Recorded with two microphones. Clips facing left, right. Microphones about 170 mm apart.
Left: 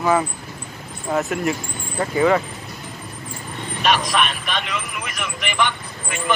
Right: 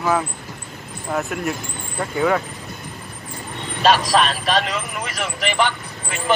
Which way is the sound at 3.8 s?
30° right (ahead or behind).